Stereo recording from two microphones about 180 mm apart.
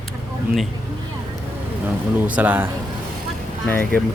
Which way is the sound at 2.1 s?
10° right (ahead or behind).